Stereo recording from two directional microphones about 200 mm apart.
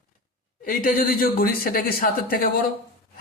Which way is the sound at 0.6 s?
45° left (ahead or behind).